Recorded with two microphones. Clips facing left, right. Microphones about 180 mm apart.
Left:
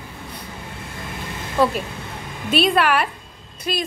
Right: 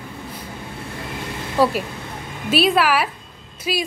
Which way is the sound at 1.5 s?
10° right (ahead or behind).